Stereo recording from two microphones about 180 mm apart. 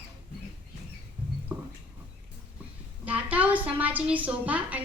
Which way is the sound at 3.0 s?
10° right (ahead or behind).